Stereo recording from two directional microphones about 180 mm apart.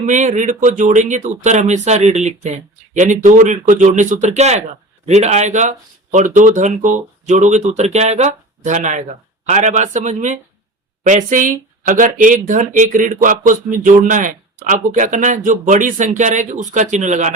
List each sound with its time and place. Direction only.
0.0 s speech: 40° right (ahead or behind)